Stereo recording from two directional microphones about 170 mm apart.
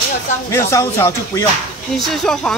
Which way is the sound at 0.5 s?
15° left (ahead or behind).